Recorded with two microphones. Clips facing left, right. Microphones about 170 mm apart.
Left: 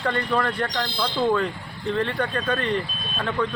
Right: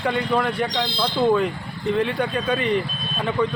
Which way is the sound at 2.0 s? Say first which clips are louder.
Right 2 dB; 10° right (ahead or behind).